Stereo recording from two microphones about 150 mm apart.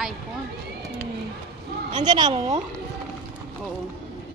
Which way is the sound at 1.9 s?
30° right (ahead or behind).